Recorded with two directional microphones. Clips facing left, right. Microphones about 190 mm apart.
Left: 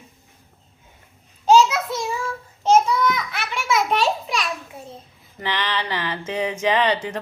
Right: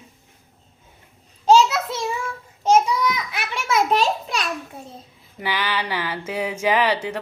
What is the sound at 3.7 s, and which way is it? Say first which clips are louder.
Speech: right 2 dB; 35° right (ahead or behind).